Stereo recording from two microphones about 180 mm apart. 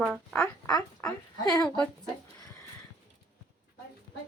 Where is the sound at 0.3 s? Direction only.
10° left (ahead or behind).